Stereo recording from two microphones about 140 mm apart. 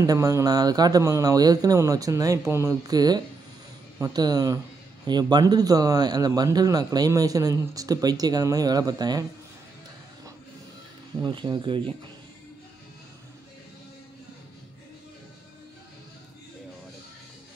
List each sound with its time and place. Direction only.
0.0 s a man's voice: 25° right (ahead or behind)
11.2 s speech: 35° right (ahead or behind)